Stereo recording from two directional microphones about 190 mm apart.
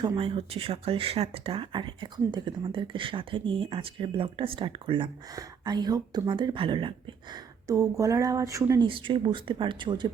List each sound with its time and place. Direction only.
0.0 s speech: 25° right (ahead or behind)